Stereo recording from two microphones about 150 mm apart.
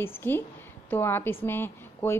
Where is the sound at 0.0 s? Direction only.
15° left (ahead or behind).